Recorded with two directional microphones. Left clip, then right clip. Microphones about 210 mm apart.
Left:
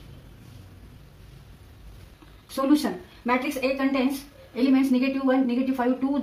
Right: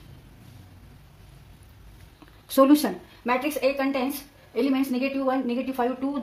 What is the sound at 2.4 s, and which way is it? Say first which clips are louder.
A woman's voice: right 5 dB; 50° right (ahead or behind).